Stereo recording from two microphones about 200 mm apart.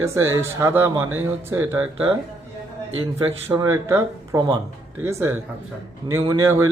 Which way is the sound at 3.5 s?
15° right (ahead or behind).